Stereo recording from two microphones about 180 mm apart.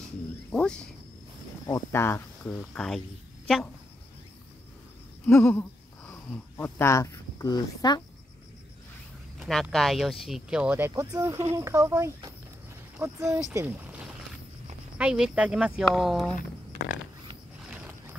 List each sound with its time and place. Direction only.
0.0 s speech: 5° left (ahead or behind)
5.2 s speech: 10° left (ahead or behind)
9.4 s speech: centre (ahead or behind)
11.0 s speech: 20° right (ahead or behind)
13.5 s boat: 15° right (ahead or behind)
15.0 s speech: 5° right (ahead or behind)
17.6 s a sound: 10° right (ahead or behind)